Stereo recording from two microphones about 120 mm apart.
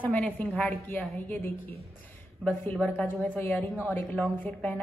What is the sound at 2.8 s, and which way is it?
A woman's voice, 15° left (ahead or behind).